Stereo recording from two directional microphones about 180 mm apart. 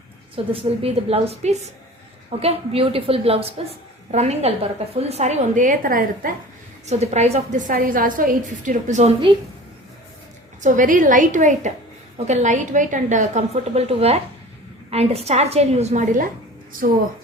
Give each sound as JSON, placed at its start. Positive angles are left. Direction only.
{"t": 0.3, "sound": "a woman's voice", "side_deg": -30}
{"t": 6.8, "sound": "a woman's voice", "side_deg": -35}
{"t": 10.6, "sound": "a woman's voice", "side_deg": -45}